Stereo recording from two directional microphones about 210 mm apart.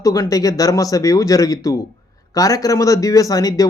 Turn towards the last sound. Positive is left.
turn(degrees=15)  # may be behind; listen again after turning